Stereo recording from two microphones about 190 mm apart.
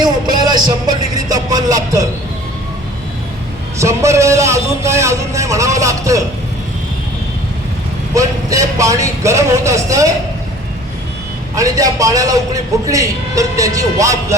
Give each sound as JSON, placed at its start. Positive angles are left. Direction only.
{"t": 0.0, "sound": "speech", "side_deg": -20}
{"t": 3.8, "sound": "a man's voice", "side_deg": -15}
{"t": 8.1, "sound": "a man's voice", "side_deg": -15}
{"t": 11.5, "sound": "a man's voice", "side_deg": -20}